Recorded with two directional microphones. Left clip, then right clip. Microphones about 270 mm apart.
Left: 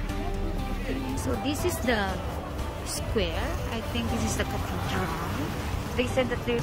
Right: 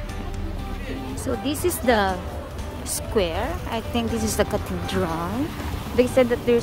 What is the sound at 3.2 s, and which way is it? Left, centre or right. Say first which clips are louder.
Speech: right 7 dB; centre.